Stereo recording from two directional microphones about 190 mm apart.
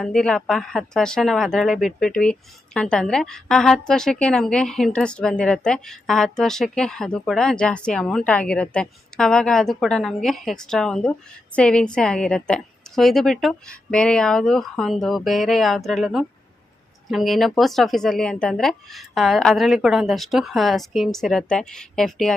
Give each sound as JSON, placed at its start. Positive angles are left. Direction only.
{"t": 0.0, "sound": "a woman's voice", "side_deg": 5}